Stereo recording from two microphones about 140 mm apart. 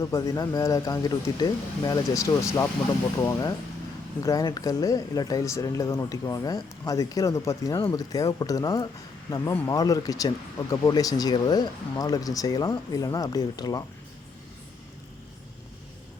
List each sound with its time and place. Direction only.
0.0 s speech: 25° left (ahead or behind)